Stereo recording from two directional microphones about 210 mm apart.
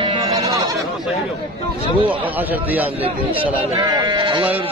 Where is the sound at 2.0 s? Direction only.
10° right (ahead or behind).